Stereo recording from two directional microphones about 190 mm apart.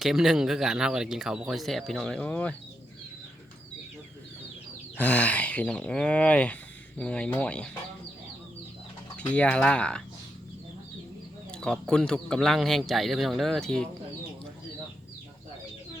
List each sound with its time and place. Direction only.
0.0 s speech: centre (ahead or behind)
4.9 s speech: 10° left (ahead or behind)
9.1 s speech: 5° left (ahead or behind)
11.5 s speech: 5° left (ahead or behind)